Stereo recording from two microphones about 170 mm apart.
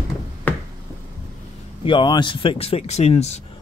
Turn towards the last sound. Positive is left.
turn(degrees=40)  # may be behind; listen again after turning